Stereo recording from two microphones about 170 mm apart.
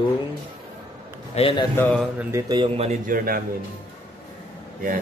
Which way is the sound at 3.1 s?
60° right (ahead or behind).